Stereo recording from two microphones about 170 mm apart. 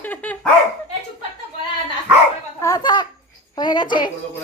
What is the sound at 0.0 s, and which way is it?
Dog, 10° left (ahead or behind).